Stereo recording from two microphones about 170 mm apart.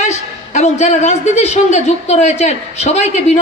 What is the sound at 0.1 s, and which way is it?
A man's voice, 45° left (ahead or behind).